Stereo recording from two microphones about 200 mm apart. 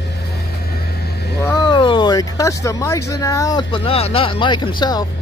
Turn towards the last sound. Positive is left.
turn(degrees=20)  # may be behind; listen again after turning